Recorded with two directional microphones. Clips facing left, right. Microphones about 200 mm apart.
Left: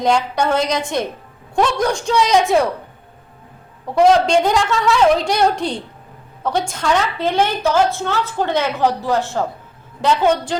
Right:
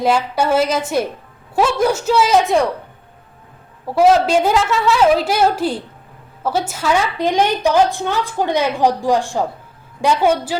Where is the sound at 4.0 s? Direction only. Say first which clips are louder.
Even; 5° right (ahead or behind).